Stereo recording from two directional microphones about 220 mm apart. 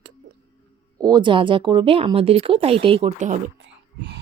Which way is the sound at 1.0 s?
20° right (ahead or behind).